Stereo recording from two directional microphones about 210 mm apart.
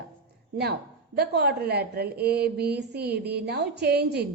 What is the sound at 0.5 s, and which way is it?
Speech, 50° right (ahead or behind).